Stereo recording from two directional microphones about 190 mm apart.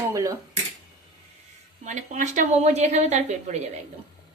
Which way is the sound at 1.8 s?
40° right (ahead or behind).